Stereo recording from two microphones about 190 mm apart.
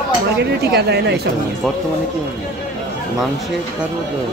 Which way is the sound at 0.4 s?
60° right (ahead or behind).